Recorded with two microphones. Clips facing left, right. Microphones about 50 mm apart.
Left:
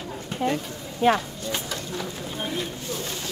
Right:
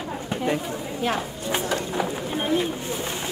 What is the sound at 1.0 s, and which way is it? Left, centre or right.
Speech, centre.